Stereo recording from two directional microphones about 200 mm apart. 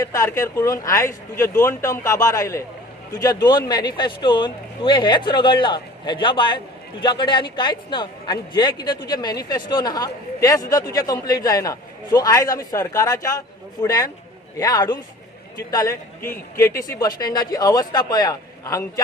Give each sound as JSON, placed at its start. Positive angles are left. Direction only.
{"t": 0.0, "sound": "speech", "side_deg": 15}